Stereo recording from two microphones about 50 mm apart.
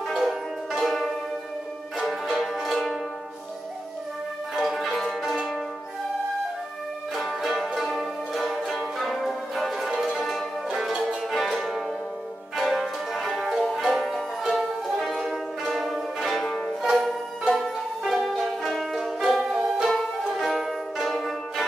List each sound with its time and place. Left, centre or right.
0.1 s music: centre
4.6 s music: centre
7.2 s music: centre
11.2 s music: centre
16.4 s music: centre
16.8 s music: centre
19.9 s music: centre